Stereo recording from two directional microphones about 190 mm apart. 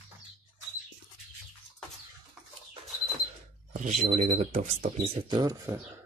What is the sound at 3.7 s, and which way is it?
Speech, 40° right (ahead or behind).